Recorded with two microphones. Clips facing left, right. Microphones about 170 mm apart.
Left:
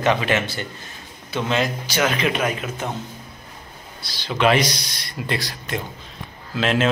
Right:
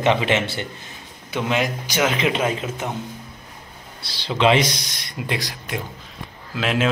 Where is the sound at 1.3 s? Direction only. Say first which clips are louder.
Even; 10° right (ahead or behind).